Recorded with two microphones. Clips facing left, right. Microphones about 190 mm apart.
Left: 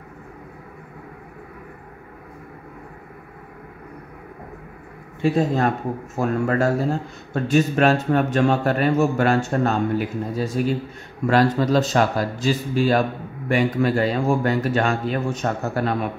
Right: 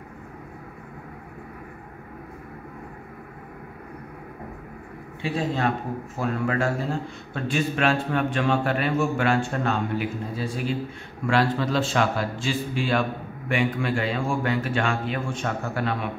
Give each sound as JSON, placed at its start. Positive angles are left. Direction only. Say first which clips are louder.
{"t": 5.2, "sound": "a man's voice", "louder": "left 6 dB", "side_deg": 45}